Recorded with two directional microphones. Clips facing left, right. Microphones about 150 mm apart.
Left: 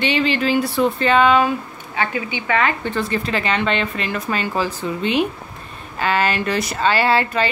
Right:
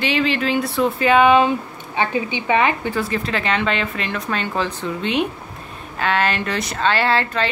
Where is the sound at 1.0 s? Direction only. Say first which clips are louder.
Right 2 dB; 15° right (ahead or behind).